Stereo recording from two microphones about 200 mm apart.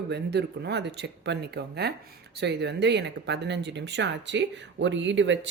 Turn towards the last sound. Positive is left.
turn(degrees=-65)  # may be behind; listen again after turning